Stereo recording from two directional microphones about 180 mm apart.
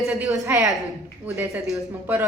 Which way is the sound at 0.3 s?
15° right (ahead or behind).